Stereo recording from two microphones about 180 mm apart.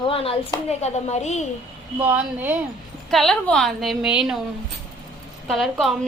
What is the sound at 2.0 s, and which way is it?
Speech, 10° right (ahead or behind).